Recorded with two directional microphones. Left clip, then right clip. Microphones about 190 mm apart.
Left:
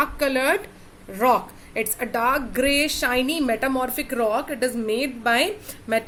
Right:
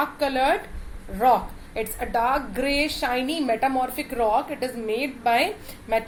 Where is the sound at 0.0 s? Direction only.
40° left (ahead or behind).